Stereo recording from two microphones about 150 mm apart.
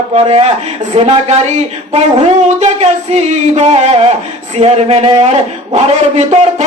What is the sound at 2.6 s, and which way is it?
Speech, 50° right (ahead or behind).